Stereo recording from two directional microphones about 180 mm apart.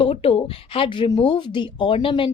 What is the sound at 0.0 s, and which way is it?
A woman's voice, 35° left (ahead or behind).